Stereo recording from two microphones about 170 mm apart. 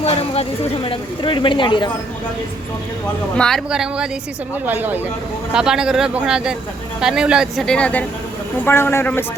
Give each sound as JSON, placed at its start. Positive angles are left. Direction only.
{"t": 0.0, "sound": "speech", "side_deg": 35}
{"t": 3.3, "sound": "a man's voice", "side_deg": 5}